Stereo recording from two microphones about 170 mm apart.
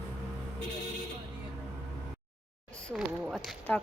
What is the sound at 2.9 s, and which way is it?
Speech, centre (ahead or behind).